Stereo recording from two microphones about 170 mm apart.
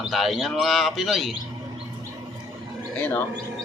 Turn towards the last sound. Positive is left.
turn(degrees=10)  # may be behind; listen again after turning